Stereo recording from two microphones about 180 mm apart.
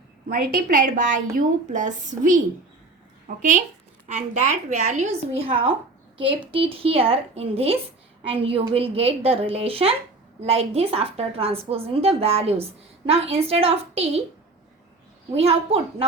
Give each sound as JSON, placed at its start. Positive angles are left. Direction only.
{"t": 0.3, "sound": "a woman's voice", "side_deg": -50}
{"t": 15.4, "sound": "a woman's voice", "side_deg": -35}